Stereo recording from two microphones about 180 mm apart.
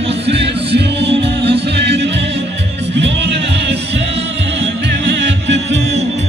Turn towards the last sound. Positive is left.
turn(degrees=-80)